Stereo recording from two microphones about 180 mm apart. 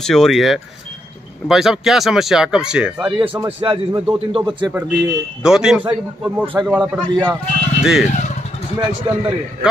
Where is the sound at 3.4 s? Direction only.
15° right (ahead or behind).